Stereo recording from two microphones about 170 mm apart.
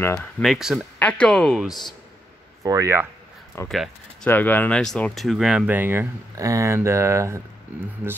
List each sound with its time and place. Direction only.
0.0 s speech: 15° left (ahead or behind)
0.4 s speech: centre (ahead or behind)
1.7 s speech: 25° left (ahead or behind)
2.6 s speech: 20° right (ahead or behind)
3.6 s speech: centre (ahead or behind); by 7.4 s 15° right (ahead or behind)